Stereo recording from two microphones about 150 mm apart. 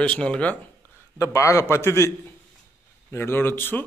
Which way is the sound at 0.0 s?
5° left (ahead or behind).